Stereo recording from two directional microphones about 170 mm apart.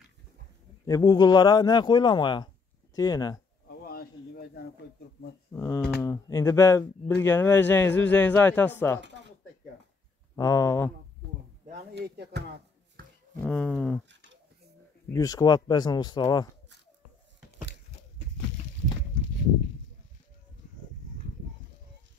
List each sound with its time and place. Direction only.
0.8 s a man's voice: 20° left (ahead or behind)
3.8 s a sound: 65° left (ahead or behind)
5.5 s speech: 15° left (ahead or behind)
10.3 s a man's voice: 20° left (ahead or behind)
11.9 s speech: 75° right (ahead or behind)
13.4 s speech: 5° left (ahead or behind)
15.1 s a man's voice: 20° left (ahead or behind)